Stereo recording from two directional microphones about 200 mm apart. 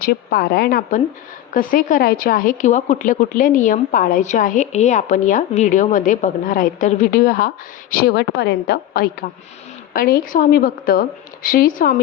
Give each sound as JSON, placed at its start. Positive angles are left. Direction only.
{"t": 0.0, "sound": "a woman's voice", "side_deg": 50}